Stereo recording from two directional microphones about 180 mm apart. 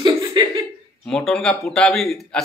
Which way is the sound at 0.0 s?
25° right (ahead or behind).